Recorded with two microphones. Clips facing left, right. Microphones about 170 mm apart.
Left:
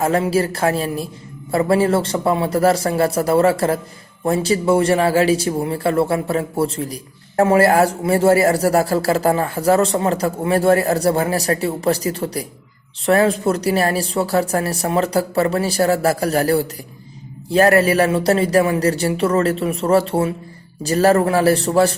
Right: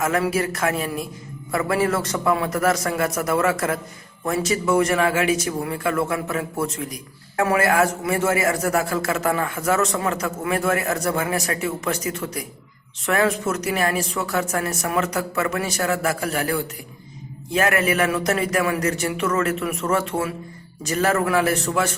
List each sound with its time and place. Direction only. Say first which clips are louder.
0.0 s speech: left 4 dB; 30° left (ahead or behind)